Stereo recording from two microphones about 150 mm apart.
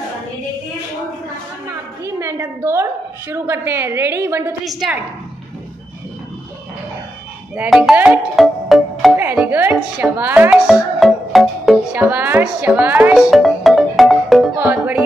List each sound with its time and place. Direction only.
1.7 s a woman's voice: 20° right (ahead or behind)
4.6 s speech: centre (ahead or behind)
7.5 s speech: 5° right (ahead or behind)
7.9 s music: 10° right (ahead or behind)
9.1 s speech: 15° right (ahead or behind)
14.6 s music: 10° right (ahead or behind)